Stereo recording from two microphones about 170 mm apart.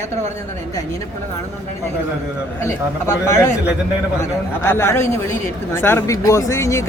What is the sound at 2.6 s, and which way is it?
Speech, 15° left (ahead or behind).